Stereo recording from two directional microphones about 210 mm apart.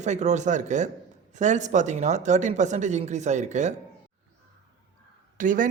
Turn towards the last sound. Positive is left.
turn(degrees=-40)  # may be behind; listen again after turning